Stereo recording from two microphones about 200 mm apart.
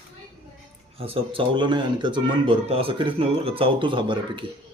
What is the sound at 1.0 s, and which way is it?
Speech, 25° right (ahead or behind).